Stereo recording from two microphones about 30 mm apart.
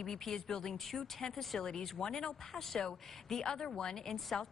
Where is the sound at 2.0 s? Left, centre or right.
Left.